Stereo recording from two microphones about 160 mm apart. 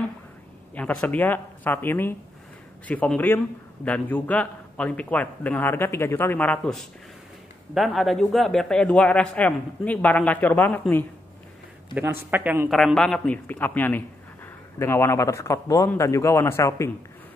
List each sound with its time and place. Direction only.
0.7 s a man's voice: 10° left (ahead or behind)
11.9 s a man's voice: 10° right (ahead or behind)
12.6 s a man's voice: centre (ahead or behind); by 16.9 s 20° left (ahead or behind)